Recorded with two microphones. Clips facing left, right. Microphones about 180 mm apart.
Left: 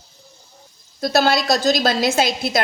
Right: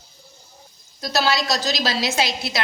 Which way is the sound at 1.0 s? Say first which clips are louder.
Left 5 dB; 55° left (ahead or behind).